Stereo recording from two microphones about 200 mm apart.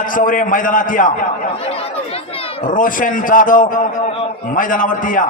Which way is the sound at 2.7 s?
40° left (ahead or behind).